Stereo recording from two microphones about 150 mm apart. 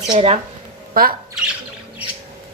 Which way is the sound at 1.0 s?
80° right.